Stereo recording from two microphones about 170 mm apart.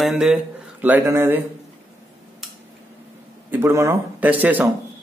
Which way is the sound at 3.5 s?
15° right (ahead or behind).